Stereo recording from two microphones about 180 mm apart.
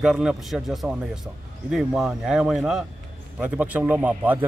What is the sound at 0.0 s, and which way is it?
A man's voice, 5° right (ahead or behind).